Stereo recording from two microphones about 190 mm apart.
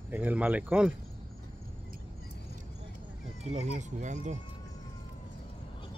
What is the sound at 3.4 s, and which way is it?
Speech, 35° right (ahead or behind).